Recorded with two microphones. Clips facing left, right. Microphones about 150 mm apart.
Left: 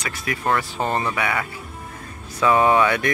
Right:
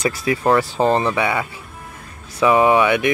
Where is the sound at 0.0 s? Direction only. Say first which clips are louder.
Right 7 dB; 35° right (ahead or behind).